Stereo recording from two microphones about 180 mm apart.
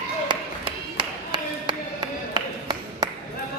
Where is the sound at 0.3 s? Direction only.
25° right (ahead or behind).